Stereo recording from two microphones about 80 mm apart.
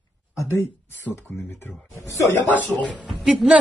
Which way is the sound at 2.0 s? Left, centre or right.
Left.